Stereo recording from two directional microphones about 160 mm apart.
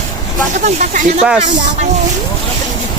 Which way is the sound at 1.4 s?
45° right (ahead or behind).